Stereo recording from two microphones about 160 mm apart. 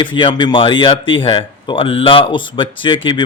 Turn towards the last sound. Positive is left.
turn(degrees=30)  # may be behind; listen again after turning